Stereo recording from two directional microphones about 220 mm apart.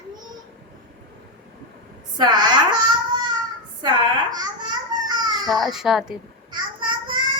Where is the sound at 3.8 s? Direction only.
20° right (ahead or behind).